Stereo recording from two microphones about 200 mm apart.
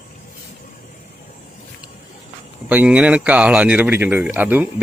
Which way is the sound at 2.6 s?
5° right (ahead or behind).